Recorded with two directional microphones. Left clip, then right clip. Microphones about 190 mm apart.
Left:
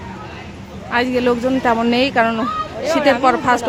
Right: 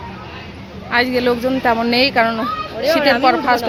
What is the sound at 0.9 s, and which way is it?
Speech, 10° left (ahead or behind).